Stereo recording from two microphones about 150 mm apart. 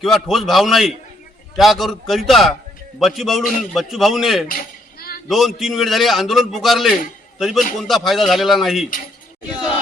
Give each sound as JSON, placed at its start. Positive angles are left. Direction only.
{"t": 0.0, "sound": "a man's voice", "side_deg": 0}
{"t": 4.4, "sound": "a sound", "side_deg": 80}
{"t": 5.3, "sound": "a man's voice", "side_deg": 0}